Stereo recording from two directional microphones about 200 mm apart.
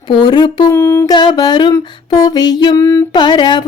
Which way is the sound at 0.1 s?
25° left (ahead or behind).